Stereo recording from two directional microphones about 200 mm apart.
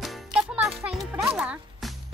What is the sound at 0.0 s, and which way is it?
Music, 5° right (ahead or behind).